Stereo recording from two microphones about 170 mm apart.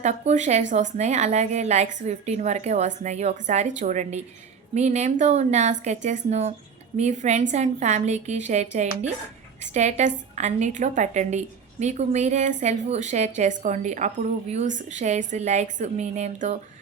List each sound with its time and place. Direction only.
0.0 s a woman's voice: 45° right (ahead or behind)